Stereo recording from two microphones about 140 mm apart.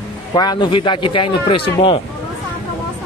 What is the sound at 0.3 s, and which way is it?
A man's voice, 30° left (ahead or behind).